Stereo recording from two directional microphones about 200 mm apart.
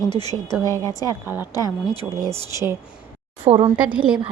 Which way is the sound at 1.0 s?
10° right (ahead or behind).